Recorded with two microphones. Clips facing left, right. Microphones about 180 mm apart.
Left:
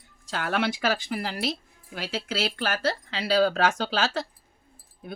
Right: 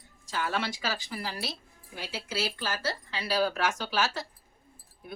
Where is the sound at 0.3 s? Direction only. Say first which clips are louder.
Left 5 dB; 65° left (ahead or behind).